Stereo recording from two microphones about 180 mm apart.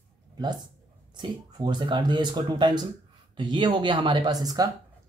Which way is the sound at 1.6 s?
25° right (ahead or behind).